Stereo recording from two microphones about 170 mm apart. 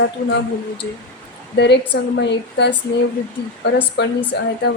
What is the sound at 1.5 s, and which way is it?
Speech, 85° left.